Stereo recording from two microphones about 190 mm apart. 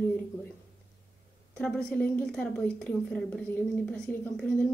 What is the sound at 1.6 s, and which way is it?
A woman's voice, 5° left (ahead or behind).